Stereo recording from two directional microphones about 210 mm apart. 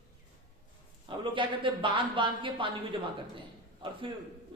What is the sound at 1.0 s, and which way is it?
A woman's voice, 25° right (ahead or behind).